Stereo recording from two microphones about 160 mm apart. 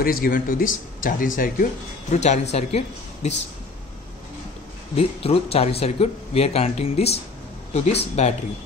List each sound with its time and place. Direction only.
0.0 s speech: 65° left (ahead or behind); by 3.3 s 40° left (ahead or behind)
4.9 s speech: 35° left (ahead or behind)